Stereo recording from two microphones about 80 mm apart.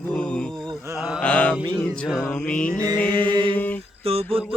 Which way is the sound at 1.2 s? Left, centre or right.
Centre.